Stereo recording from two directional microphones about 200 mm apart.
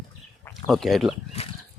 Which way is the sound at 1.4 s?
30° left (ahead or behind).